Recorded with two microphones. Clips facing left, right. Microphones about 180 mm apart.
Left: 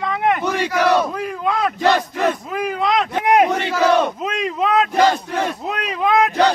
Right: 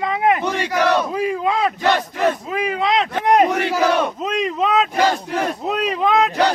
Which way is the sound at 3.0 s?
10° left (ahead or behind).